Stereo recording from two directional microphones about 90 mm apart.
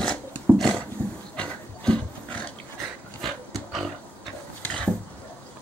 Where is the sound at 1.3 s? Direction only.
10° left (ahead or behind).